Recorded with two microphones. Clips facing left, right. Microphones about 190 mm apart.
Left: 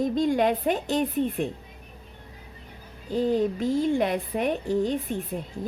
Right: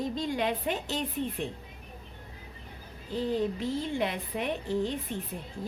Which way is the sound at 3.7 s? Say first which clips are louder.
Left 7 dB; 50° left (ahead or behind).